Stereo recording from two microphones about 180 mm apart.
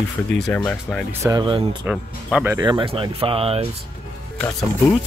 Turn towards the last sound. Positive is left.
turn(degrees=5)  # may be behind; listen again after turning